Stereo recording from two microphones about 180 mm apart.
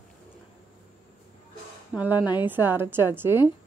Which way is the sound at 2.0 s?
10° right (ahead or behind).